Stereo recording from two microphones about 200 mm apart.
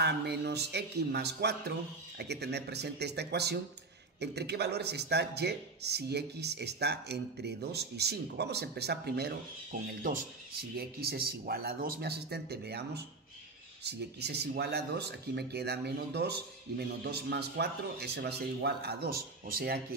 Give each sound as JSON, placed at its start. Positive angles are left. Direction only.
{"t": 0.0, "sound": "a man's voice", "side_deg": -55}